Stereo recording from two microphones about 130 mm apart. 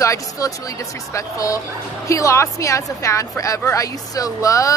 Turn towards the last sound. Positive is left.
turn(degrees=25)  # may be behind; listen again after turning